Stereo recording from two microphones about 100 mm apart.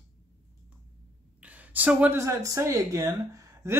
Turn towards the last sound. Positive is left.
turn(degrees=-25)  # may be behind; listen again after turning